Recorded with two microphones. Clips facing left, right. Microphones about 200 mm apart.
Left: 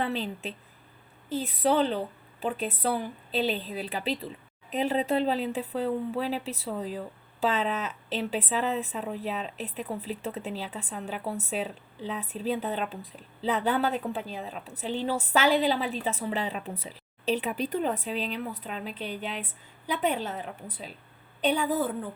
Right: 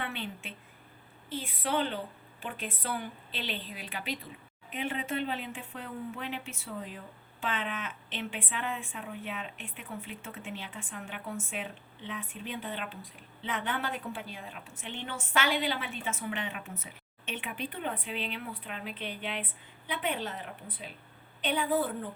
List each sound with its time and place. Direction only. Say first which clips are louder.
0.0 s a woman's voice: left 8 dB; 35° left (ahead or behind)